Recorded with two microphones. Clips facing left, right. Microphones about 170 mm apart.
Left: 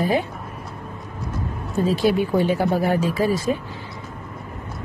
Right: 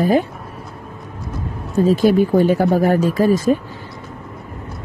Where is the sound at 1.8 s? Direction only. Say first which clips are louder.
Right 6 dB; 45° right (ahead or behind).